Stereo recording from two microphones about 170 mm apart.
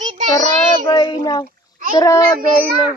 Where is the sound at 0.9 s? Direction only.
25° left (ahead or behind).